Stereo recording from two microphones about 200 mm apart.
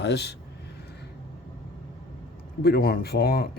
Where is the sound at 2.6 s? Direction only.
50° left (ahead or behind).